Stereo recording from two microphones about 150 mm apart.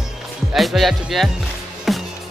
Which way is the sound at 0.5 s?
Centre (ahead or behind).